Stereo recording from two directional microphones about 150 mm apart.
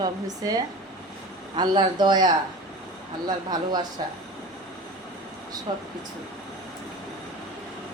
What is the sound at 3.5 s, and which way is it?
Speech, 25° right (ahead or behind).